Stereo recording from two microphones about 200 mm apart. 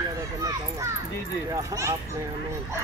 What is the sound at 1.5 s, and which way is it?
Speech, 15° right (ahead or behind).